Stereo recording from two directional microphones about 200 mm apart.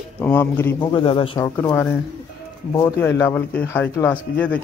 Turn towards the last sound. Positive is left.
turn(degrees=10)  # may be behind; listen again after turning